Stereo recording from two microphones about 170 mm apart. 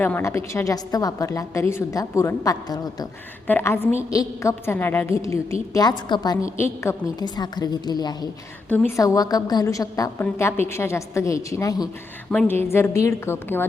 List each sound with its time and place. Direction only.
0.0 s a woman's voice: 15° left (ahead or behind)
3.4 s a woman's voice: 10° left (ahead or behind)
12.3 s a woman's voice: 5° left (ahead or behind)
12.6 s a woman's voice: 15° left (ahead or behind)